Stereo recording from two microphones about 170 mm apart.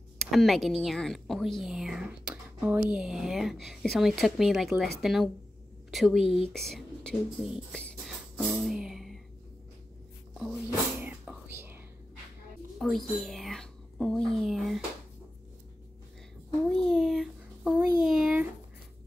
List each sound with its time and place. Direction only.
0.2 s a woman's voice: centre (ahead or behind)
6.2 s speech: 35° left (ahead or behind)
6.5 s a sound: centre (ahead or behind)
10.3 s whispering: 5° right (ahead or behind)
12.7 s whispering: centre (ahead or behind)
16.6 s a sound: 5° left (ahead or behind)